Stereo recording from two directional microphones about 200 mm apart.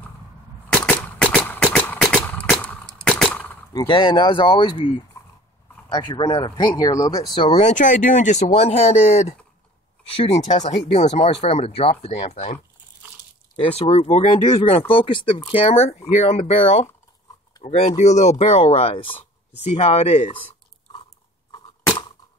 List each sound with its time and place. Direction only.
0.8 s a sound: 5° left (ahead or behind)
3.7 s speech: 25° left (ahead or behind)
13.6 s speech: 30° left (ahead or behind)